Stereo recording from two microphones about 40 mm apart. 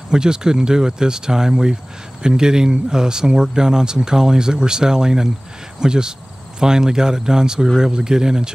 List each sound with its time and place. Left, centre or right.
0.1 s speech: centre